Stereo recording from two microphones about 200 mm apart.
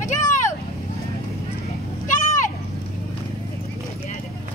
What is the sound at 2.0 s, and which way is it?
Vehicle, 40° left (ahead or behind).